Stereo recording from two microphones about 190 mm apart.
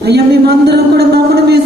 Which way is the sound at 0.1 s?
60° right (ahead or behind).